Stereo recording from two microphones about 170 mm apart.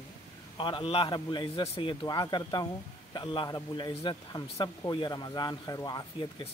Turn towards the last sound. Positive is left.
turn(degrees=20)  # may be behind; listen again after turning